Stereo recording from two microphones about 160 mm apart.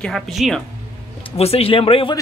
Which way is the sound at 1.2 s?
40° left (ahead or behind).